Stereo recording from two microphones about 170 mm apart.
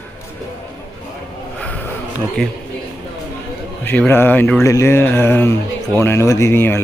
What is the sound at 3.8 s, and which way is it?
Speech, 10° left (ahead or behind).